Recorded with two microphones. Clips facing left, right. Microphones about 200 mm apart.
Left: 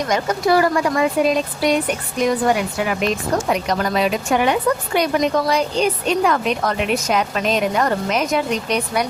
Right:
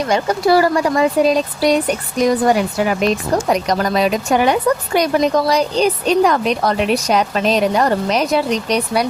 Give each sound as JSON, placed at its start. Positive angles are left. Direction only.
{"t": 0.1, "sound": "a woman's voice", "side_deg": -30}